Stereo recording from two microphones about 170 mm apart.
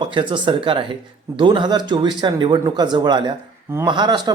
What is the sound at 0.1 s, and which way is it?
Speech, 30° right (ahead or behind).